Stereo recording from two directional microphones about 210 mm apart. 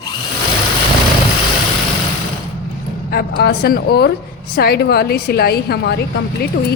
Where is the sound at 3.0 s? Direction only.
45° left (ahead or behind).